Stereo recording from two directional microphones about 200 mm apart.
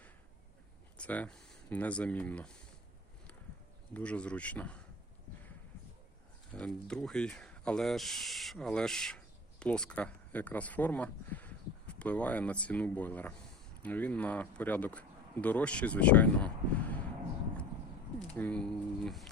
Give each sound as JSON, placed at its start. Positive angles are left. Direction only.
{"t": 0.9, "sound": "speech", "side_deg": 5}
{"t": 3.9, "sound": "speech", "side_deg": 5}
{"t": 6.5, "sound": "speech", "side_deg": 5}
{"t": 18.3, "sound": "speech", "side_deg": 5}